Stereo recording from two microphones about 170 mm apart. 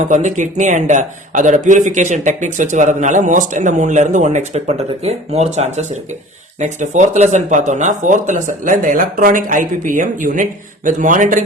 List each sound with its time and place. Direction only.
0.0 s speech: 45° right (ahead or behind)